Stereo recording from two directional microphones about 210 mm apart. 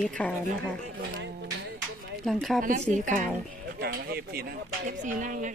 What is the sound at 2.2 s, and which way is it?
Speech, centre (ahead or behind).